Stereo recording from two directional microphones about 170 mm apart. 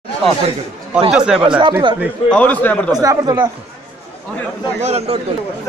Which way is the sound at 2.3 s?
10° left (ahead or behind).